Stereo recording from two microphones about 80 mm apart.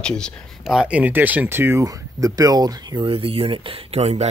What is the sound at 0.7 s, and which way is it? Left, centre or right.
Speech, centre.